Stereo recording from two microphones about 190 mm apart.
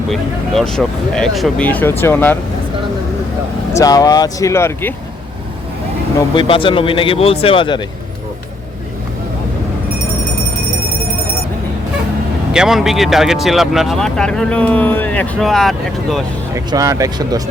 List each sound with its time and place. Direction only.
0.1 s speech: centre (ahead or behind)
3.7 s speech: 20° left (ahead or behind)
6.1 s speech: 25° left (ahead or behind)
12.5 s speech: centre (ahead or behind)
16.7 s speech: 15° right (ahead or behind)